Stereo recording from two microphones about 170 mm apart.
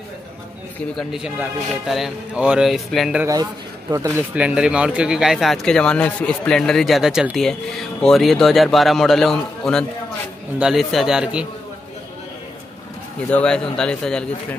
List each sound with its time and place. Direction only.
0.9 s speech: 5° right (ahead or behind)
3.9 s speech: 25° right (ahead or behind)
4.4 s speech: 5° right (ahead or behind)
13.3 s speech: 5° left (ahead or behind)